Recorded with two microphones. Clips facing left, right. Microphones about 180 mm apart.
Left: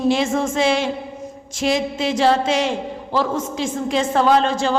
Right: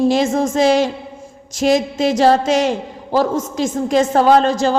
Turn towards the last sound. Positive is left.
turn(degrees=-40)  # may be behind; listen again after turning